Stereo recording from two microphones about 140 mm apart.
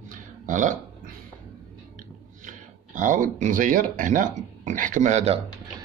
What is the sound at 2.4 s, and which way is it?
Speech, 65° right (ahead or behind).